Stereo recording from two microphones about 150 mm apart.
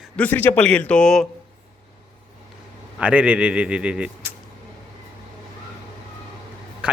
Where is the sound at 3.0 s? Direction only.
10° right (ahead or behind).